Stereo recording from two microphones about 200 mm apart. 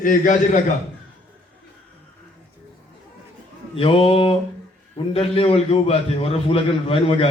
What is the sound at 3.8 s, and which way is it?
A man's voice, 30° left (ahead or behind).